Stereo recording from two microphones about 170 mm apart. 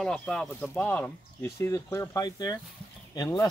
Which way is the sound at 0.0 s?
5° left (ahead or behind).